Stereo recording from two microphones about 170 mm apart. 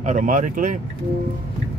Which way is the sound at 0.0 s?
50° right (ahead or behind).